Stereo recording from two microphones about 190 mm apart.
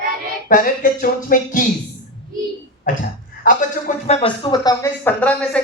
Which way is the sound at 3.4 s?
40° left (ahead or behind).